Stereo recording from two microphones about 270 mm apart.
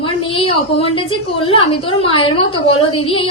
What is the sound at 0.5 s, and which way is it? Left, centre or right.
A woman's voice, centre.